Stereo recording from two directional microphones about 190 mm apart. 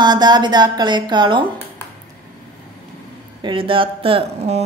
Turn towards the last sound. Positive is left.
turn(degrees=-35)  # may be behind; listen again after turning